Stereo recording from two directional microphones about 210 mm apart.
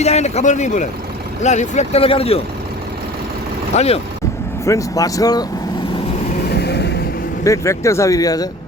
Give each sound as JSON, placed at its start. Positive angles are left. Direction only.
{"t": 0.0, "sound": "speech", "side_deg": 30}
{"t": 3.8, "sound": "speech", "side_deg": 30}
{"t": 4.6, "sound": "speech", "side_deg": 15}
{"t": 6.5, "sound": "a sound", "side_deg": 50}
{"t": 7.4, "sound": "speech", "side_deg": 15}